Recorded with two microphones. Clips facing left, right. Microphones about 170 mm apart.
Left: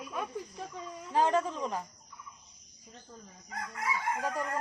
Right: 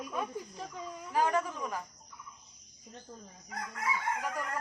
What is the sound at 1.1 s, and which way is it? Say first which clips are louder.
Speech: left 2 dB; 25° left (ahead or behind).